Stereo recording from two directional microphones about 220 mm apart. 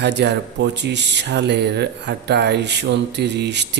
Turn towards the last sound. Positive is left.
turn(degrees=-50)  # may be behind; listen again after turning